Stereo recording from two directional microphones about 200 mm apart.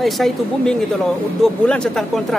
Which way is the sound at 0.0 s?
Centre (ahead or behind).